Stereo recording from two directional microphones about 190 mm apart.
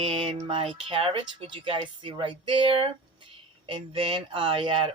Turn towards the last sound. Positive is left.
turn(degrees=-25)  # may be behind; listen again after turning